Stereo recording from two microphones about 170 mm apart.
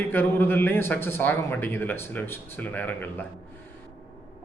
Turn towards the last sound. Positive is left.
turn(degrees=10)  # may be behind; listen again after turning